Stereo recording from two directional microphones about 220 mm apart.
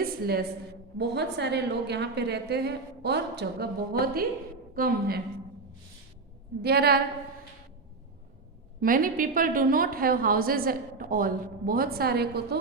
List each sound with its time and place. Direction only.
0.0 s a woman's voice: 45° right (ahead or behind)
6.6 s a woman's voice: 45° right (ahead or behind)
8.8 s a woman's voice: 40° right (ahead or behind)